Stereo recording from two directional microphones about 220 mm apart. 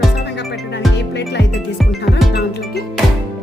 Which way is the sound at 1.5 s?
Centre (ahead or behind).